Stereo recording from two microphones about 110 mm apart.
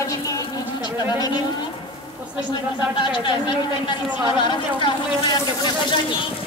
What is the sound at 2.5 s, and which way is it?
Speech, 45° left (ahead or behind).